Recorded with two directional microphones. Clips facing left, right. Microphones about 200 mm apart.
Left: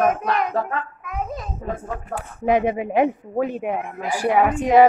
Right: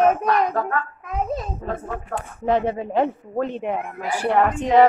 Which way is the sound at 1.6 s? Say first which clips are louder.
Even; 10° left (ahead or behind).